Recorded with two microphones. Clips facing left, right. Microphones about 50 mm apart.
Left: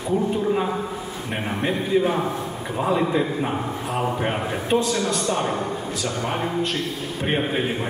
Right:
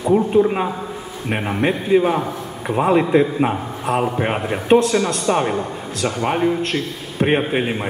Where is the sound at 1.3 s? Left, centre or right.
Right.